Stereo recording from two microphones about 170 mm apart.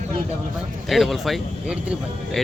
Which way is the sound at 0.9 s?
Centre (ahead or behind).